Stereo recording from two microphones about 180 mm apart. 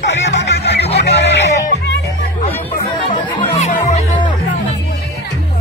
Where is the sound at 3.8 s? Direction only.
35° left (ahead or behind).